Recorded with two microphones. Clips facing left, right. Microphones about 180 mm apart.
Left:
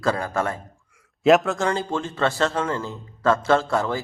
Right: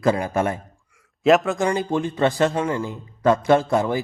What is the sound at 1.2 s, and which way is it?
Speech, centre (ahead or behind).